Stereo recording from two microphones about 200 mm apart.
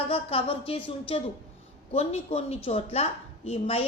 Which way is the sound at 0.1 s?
25° left (ahead or behind).